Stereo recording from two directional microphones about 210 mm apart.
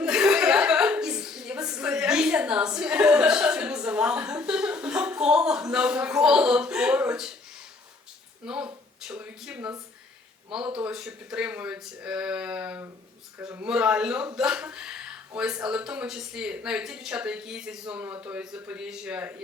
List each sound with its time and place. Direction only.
0.0 s chuckle: 5° right (ahead or behind)
8.4 s speech: 5° right (ahead or behind)